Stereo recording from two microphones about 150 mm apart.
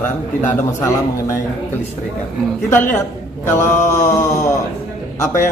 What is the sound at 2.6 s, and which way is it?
Speech, 10° left (ahead or behind).